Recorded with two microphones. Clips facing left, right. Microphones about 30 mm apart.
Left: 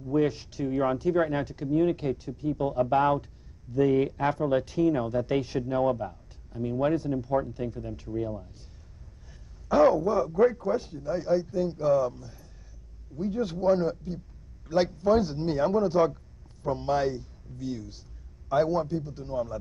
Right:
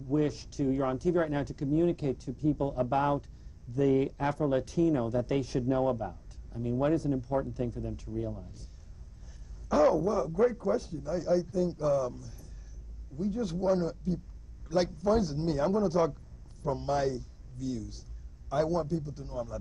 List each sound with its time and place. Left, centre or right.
0.1 s speech: centre
9.7 s a man's voice: centre